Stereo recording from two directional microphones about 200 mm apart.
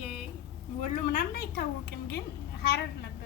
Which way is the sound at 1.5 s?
55° left (ahead or behind).